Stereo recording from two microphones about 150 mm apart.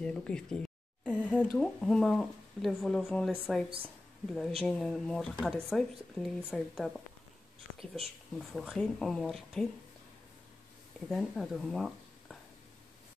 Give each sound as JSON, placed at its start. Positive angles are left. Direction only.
{"t": 0.0, "sound": "speech", "side_deg": 5}
{"t": 8.4, "sound": "speech", "side_deg": 0}
{"t": 11.1, "sound": "speech", "side_deg": 0}